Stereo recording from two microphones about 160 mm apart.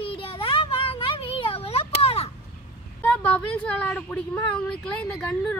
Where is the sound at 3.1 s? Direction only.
10° left (ahead or behind).